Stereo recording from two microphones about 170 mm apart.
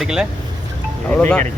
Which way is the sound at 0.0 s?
5° right (ahead or behind).